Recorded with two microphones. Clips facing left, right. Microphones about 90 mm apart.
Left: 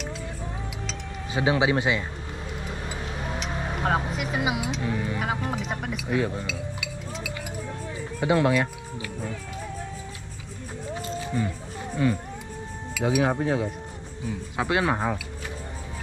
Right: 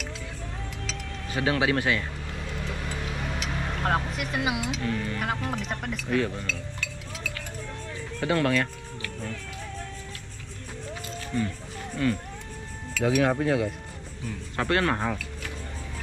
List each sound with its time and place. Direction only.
1.3 s speech: 20° left (ahead or behind)
3.5 s vehicle: 15° left (ahead or behind)
4.1 s speech: 5° left (ahead or behind)
4.8 s speech: 15° left (ahead or behind)
11.1 s a sound: 15° left (ahead or behind)
12.9 s speech: 5° left (ahead or behind)